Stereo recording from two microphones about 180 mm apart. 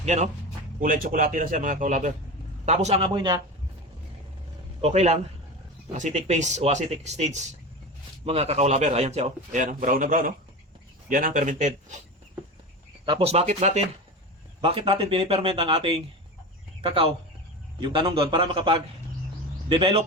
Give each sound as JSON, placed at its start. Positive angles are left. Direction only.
{"t": 0.0, "sound": "speech", "side_deg": -40}
{"t": 0.8, "sound": "a man's voice", "side_deg": -50}
{"t": 4.8, "sound": "a man's voice", "side_deg": -35}
{"t": 13.1, "sound": "a man's voice", "side_deg": -30}